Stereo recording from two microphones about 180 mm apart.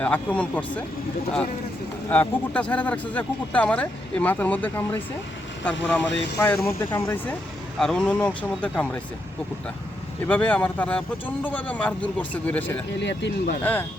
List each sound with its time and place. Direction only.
0.0 s speech: 10° left (ahead or behind)
2.0 s speech: 10° left (ahead or behind)
6.1 s speech: 80° left
6.4 s speech: 15° left (ahead or behind)
7.8 s speech: 5° left (ahead or behind)
10.2 s speech: 10° left (ahead or behind)
13.0 s speech: 75° left (ahead or behind)
13.6 s speech: 10° left (ahead or behind)